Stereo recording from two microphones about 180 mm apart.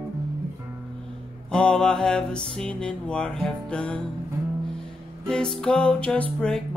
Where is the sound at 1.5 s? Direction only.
5° left (ahead or behind).